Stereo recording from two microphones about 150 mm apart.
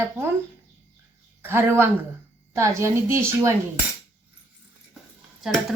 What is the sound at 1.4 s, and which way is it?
A woman's voice, 15° right (ahead or behind).